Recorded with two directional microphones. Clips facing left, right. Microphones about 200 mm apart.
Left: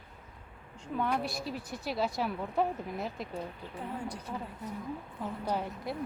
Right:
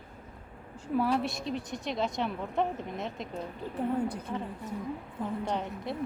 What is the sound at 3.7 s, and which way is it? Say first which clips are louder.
Speech: right 9 dB; 55° right (ahead or behind).